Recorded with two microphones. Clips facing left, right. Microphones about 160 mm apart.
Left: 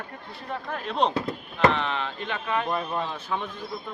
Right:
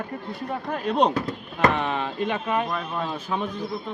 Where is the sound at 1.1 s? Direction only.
25° left (ahead or behind).